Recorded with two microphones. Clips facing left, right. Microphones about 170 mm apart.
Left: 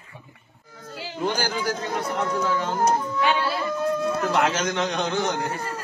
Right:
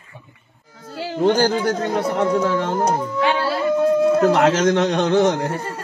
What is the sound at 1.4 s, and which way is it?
Speech, 50° right (ahead or behind).